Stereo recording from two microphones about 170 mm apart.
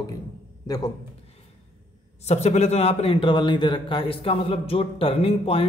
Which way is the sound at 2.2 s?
40° left (ahead or behind).